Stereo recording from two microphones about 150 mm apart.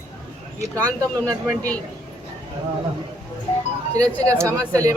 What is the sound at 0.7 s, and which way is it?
Speech, 10° left (ahead or behind).